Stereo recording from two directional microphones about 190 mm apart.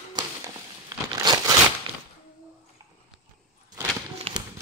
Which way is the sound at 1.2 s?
20° right (ahead or behind).